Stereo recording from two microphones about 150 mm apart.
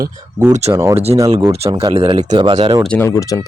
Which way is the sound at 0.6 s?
45° right (ahead or behind).